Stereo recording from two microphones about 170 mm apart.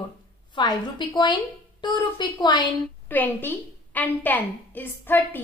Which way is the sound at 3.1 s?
10° left (ahead or behind).